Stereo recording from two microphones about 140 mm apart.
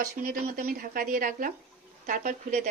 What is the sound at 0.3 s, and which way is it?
Speech, 90° right.